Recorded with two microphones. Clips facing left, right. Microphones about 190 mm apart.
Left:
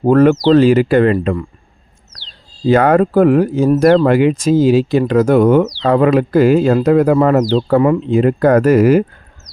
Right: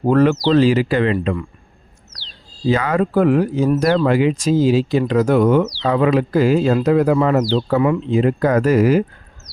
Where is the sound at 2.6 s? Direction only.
55° left (ahead or behind).